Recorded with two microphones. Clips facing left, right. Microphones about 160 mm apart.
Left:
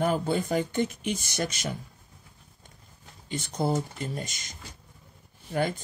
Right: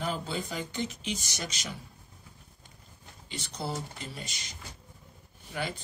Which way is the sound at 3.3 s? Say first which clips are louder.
Left 8 dB; 50° left (ahead or behind).